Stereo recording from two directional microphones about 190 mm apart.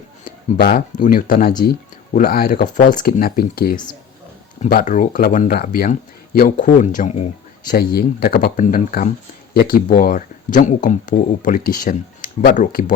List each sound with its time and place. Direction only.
0.3 s speech: 50° left (ahead or behind)
7.9 s speech: 55° left (ahead or behind)